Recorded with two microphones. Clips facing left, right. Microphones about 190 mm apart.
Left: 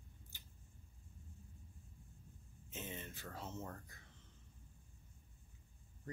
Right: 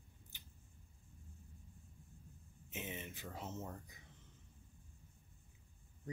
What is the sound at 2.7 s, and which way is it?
Speech, 15° right (ahead or behind).